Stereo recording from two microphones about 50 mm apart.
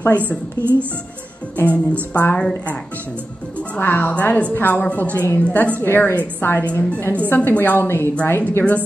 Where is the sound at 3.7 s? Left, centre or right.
Left.